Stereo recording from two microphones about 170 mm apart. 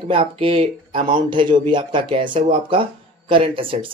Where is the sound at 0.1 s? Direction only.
30° right (ahead or behind).